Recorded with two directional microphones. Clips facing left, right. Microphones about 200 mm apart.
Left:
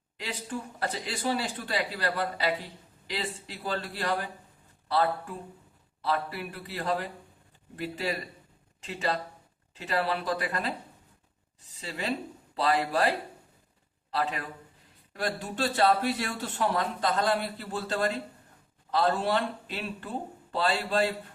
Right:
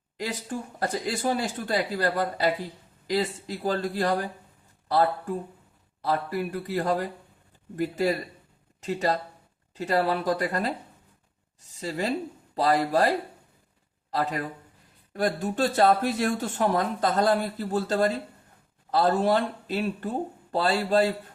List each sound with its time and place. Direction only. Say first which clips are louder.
0.2 s speech: right 4 dB; 45° right (ahead or behind)